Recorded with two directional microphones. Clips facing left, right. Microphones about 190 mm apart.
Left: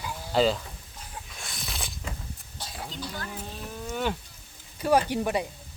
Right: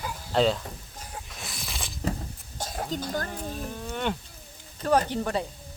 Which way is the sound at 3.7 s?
5° left (ahead or behind).